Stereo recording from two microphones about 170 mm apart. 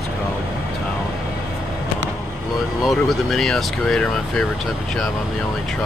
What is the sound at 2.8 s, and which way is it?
Speech, centre (ahead or behind).